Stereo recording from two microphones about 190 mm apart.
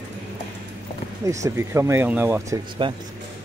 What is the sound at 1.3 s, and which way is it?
Speech, 15° right (ahead or behind).